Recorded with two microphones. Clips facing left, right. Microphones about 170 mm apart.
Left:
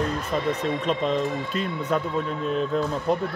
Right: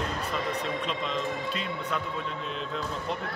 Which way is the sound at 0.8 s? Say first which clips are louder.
Left 7 dB; 45° left (ahead or behind).